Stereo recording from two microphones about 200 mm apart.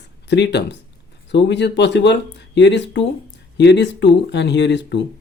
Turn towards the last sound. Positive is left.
turn(degrees=60)  # may be behind; listen again after turning